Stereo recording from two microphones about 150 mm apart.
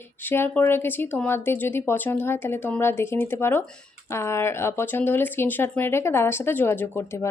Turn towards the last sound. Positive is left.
turn(degrees=15)  # may be behind; listen again after turning